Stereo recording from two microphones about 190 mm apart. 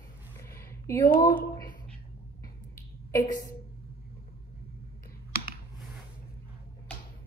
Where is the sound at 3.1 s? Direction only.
20° left (ahead or behind).